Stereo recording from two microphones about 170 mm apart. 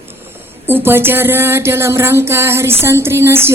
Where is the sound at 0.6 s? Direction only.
15° right (ahead or behind).